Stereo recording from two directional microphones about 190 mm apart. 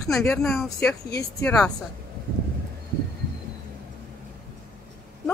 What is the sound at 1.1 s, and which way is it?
Speech, 15° left (ahead or behind).